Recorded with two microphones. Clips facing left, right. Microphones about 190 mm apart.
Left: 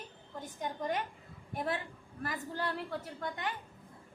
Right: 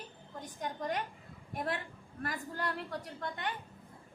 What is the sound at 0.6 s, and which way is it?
Speech, 25° left (ahead or behind).